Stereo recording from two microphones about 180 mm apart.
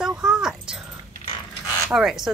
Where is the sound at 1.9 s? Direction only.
Centre (ahead or behind).